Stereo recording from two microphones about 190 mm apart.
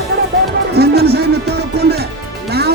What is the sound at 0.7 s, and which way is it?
Music, 60° right (ahead or behind).